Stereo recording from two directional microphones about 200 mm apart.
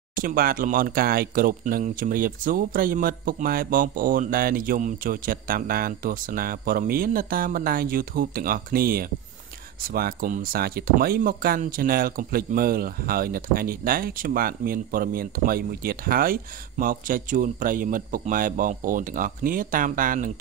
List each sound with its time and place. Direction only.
0.1 s speech: 45° right (ahead or behind)